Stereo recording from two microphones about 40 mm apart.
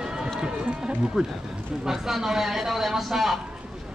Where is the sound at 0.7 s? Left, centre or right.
Centre.